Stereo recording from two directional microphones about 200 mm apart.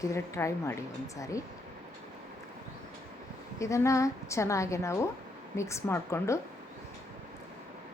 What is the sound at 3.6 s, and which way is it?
A woman's voice, 15° left (ahead or behind).